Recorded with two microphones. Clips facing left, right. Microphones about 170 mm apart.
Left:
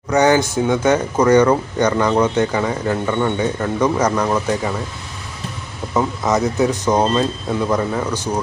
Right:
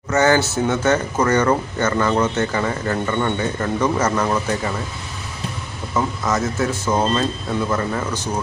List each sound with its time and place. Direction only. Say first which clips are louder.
0.1 s speech: left 2 dB; 15° left (ahead or behind)
5.9 s speech: left 3 dB; 20° left (ahead or behind)